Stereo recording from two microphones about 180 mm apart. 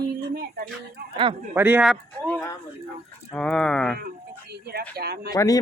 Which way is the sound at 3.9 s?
60° right (ahead or behind).